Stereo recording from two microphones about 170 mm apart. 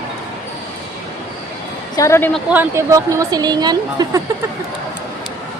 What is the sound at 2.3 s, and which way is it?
Speech, 10° right (ahead or behind).